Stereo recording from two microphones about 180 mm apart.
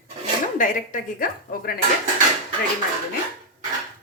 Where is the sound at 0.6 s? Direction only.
50° left (ahead or behind).